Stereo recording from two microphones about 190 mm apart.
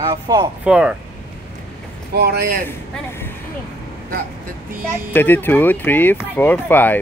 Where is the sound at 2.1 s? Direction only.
55° right (ahead or behind).